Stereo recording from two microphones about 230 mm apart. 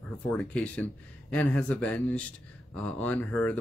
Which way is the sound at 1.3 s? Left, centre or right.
Centre.